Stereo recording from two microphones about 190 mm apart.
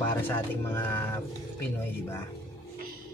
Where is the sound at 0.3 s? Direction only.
10° left (ahead or behind).